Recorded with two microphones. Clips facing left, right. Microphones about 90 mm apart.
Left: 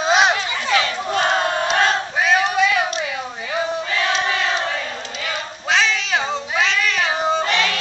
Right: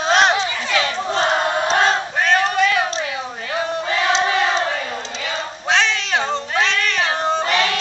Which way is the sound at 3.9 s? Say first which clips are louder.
Right 3 dB; 30° right (ahead or behind).